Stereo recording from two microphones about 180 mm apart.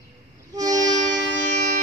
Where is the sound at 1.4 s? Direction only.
40° right (ahead or behind).